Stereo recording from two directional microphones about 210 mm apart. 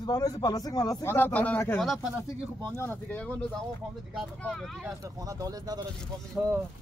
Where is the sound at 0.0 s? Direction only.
15° left (ahead or behind); by 4.8 s centre (ahead or behind).